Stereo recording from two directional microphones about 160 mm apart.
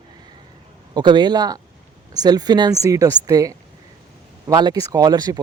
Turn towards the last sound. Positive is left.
turn(degrees=-25)  # may be behind; listen again after turning